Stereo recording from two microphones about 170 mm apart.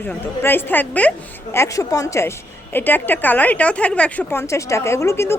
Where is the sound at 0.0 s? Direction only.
10° left (ahead or behind).